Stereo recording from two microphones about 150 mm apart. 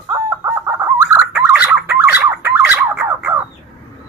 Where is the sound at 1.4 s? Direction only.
5° right (ahead or behind).